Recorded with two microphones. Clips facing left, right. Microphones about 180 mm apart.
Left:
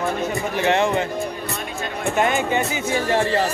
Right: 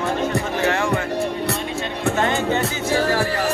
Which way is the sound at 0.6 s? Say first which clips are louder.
Left 4 dB; 20° left (ahead or behind).